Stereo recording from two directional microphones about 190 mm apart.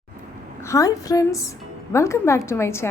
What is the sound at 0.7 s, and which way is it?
A woman's voice, 20° left (ahead or behind).